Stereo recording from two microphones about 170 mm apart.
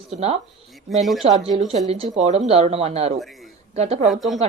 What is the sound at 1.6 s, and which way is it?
Speech, 40° right (ahead or behind).